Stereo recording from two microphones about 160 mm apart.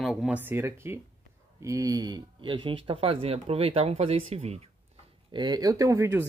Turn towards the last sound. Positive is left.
turn(degrees=-15)  # may be behind; listen again after turning